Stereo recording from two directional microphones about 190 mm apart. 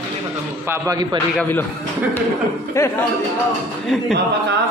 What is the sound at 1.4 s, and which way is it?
Speech, 10° left (ahead or behind).